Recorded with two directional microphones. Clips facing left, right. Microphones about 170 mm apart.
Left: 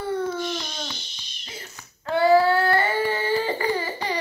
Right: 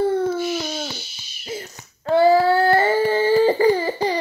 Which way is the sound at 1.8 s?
30° right (ahead or behind).